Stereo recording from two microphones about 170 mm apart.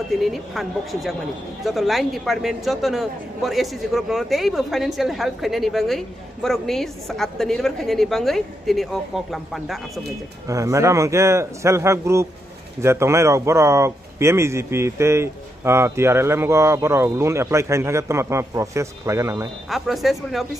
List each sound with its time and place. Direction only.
0.1 s a man's voice: centre (ahead or behind)
10.5 s speech: 15° right (ahead or behind)
19.7 s a man's voice: centre (ahead or behind)